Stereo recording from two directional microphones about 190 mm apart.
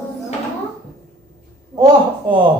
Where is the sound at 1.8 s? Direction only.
25° right (ahead or behind).